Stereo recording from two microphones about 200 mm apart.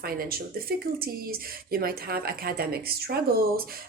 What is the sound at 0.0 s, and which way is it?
A woman's voice, 50° right (ahead or behind).